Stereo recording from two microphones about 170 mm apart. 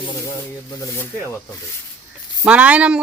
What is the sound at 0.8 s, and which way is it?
Speech, 10° left (ahead or behind).